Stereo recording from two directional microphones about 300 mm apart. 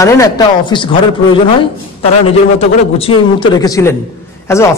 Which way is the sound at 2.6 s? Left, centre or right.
Centre.